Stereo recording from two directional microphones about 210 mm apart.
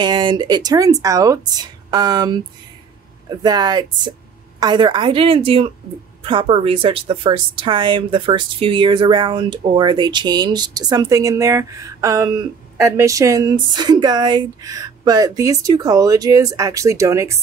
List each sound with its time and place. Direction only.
0.0 s a woman's voice: 20° right (ahead or behind)